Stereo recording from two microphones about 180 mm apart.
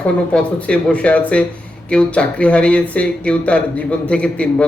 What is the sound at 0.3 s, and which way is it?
Speech, 5° left (ahead or behind).